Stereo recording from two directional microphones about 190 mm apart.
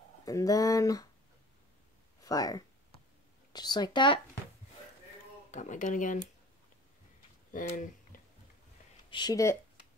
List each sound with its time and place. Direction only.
0.2 s speech: 20° left (ahead or behind)
2.2 s a sound: 20° left (ahead or behind)
3.5 s speech: 20° left (ahead or behind)
5.5 s speech: 40° left (ahead or behind)
7.7 s speech: 45° left (ahead or behind)
9.1 s speech: 20° left (ahead or behind)